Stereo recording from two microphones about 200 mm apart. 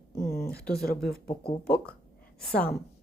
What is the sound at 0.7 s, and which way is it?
Speech, 50° left (ahead or behind).